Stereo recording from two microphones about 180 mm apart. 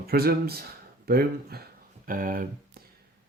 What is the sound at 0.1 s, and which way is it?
Speech, 60° right (ahead or behind).